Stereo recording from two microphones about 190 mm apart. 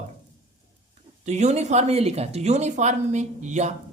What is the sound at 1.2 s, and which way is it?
Speech, 35° right (ahead or behind).